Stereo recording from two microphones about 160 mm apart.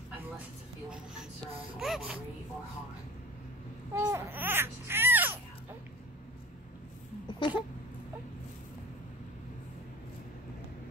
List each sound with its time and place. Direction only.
1.8 s speech: 5° right (ahead or behind)
3.9 s speech: 15° right (ahead or behind)
7.2 s a sound: 30° left (ahead or behind)